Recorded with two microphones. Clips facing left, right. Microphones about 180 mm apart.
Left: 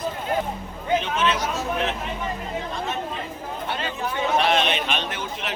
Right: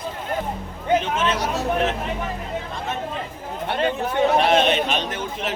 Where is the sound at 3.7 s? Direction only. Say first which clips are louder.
Right 7 dB; 60° right (ahead or behind); by 5.5 s 40° right (ahead or behind).